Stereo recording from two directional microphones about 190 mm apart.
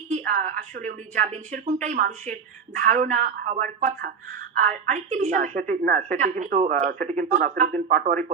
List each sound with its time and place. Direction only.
0.1 s a woman's voice: 40° right (ahead or behind)